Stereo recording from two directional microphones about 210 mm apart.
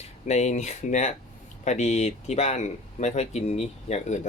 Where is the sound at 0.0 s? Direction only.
30° left (ahead or behind).